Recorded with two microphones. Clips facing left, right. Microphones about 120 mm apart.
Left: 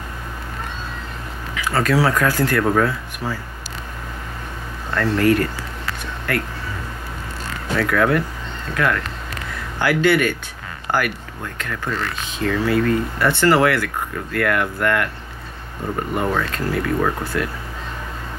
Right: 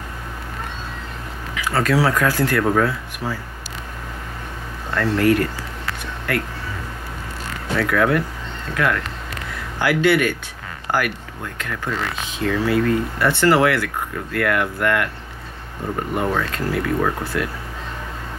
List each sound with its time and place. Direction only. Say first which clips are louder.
1.5 s speech: even; 5° right (ahead or behind)
4.9 s speech: even; 5° right (ahead or behind)
7.7 s speech: even; 5° right (ahead or behind)
16.2 s speech: even; 5° right (ahead or behind)